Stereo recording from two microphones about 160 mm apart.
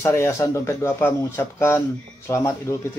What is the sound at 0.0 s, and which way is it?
Speech, 15° left (ahead or behind).